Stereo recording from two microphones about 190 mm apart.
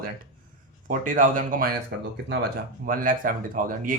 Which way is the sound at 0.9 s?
45° right (ahead or behind).